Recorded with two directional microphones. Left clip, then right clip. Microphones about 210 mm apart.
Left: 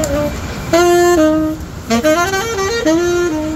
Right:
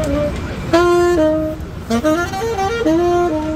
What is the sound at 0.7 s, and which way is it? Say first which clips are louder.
Saxophone: left 2 dB; 50° left (ahead or behind).